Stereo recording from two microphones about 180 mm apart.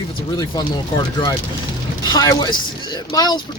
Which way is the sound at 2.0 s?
20° left (ahead or behind).